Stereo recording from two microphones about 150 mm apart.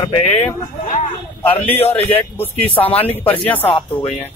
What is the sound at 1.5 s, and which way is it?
Speech, 10° left (ahead or behind).